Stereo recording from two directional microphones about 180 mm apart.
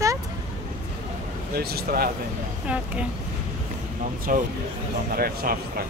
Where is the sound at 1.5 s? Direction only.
60° right (ahead or behind).